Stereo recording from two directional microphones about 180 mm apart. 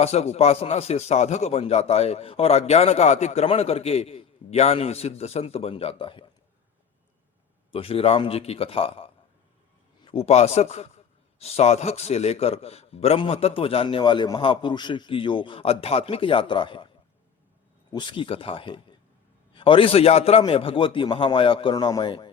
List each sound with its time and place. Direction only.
0.0 s a man's voice: 35° left (ahead or behind)
7.7 s a man's voice: 30° left (ahead or behind)
17.9 s a man's voice: 25° left (ahead or behind)